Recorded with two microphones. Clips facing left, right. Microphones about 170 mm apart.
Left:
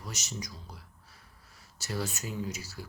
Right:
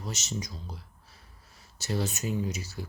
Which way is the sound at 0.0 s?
25° right (ahead or behind).